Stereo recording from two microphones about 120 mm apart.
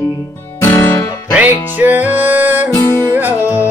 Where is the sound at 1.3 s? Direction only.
15° right (ahead or behind).